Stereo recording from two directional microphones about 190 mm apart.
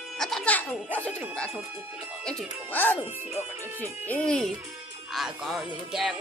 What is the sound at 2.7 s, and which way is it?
Speech, 10° left (ahead or behind).